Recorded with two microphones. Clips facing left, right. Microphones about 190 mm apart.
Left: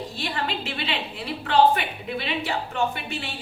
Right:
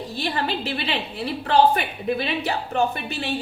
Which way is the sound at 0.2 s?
35° right (ahead or behind).